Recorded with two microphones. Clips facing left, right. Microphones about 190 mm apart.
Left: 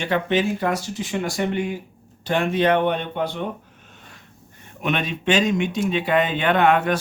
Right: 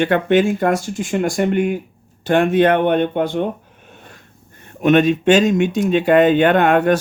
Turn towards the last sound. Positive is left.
turn(degrees=-45)  # may be behind; listen again after turning